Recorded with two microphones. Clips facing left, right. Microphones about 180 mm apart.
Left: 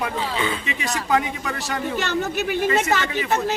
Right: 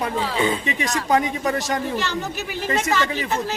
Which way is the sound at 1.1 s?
40° right (ahead or behind).